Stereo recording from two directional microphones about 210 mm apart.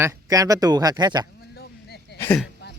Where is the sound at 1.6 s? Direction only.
50° left (ahead or behind).